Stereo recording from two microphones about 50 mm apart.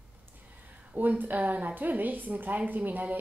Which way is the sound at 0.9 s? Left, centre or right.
Right.